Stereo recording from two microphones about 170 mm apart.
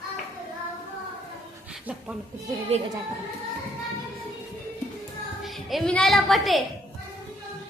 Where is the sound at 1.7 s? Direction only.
5° right (ahead or behind).